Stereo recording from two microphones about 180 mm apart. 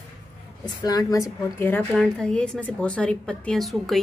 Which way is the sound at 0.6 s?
20° left (ahead or behind).